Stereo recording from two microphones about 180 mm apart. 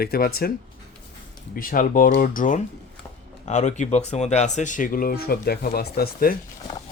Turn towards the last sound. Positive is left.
turn(degrees=55)  # may be behind; listen again after turning